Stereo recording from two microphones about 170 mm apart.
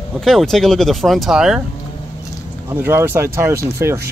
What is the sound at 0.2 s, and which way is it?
Speech, centre (ahead or behind).